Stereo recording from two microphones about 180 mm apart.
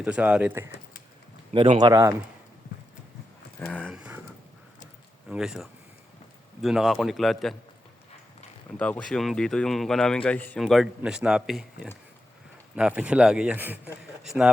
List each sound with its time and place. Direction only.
0.0 s speech: 5° right (ahead or behind)
1.5 s speech: 25° right (ahead or behind)
3.6 s horse: 5° left (ahead or behind)
3.9 s a sound: 5° right (ahead or behind)
5.3 s a man's voice: 5° right (ahead or behind)
8.8 s a man's voice: 5° left (ahead or behind)